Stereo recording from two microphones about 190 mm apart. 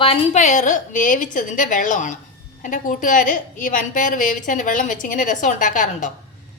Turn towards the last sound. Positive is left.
turn(degrees=45)  # may be behind; listen again after turning